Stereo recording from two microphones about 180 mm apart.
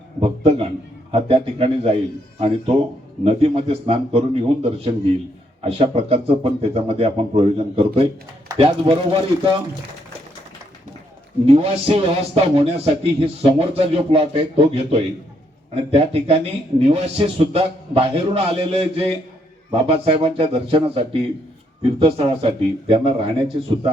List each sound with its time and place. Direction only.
0.2 s a man's voice: 30° right (ahead or behind)
3.2 s a man's voice: 30° right (ahead or behind)
11.4 s a man's voice: 30° right (ahead or behind)